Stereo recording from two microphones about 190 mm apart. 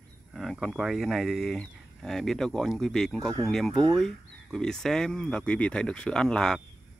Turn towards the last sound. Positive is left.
turn(degrees=5)  # may be behind; listen again after turning